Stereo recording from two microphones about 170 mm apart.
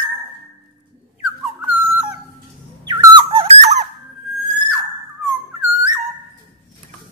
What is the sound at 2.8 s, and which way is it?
Squeak, 25° right (ahead or behind).